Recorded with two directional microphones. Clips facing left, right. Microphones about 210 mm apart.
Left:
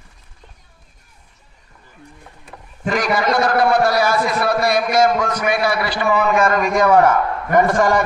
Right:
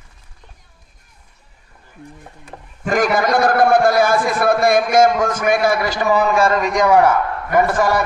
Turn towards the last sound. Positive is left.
turn(degrees=-5)  # may be behind; listen again after turning